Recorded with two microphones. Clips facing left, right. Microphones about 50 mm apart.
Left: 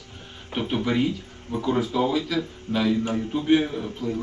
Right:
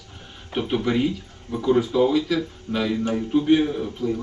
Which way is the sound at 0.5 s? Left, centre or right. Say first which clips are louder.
Right 2 dB; centre.